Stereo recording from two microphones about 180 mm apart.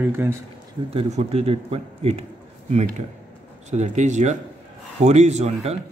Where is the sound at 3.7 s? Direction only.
40° right (ahead or behind).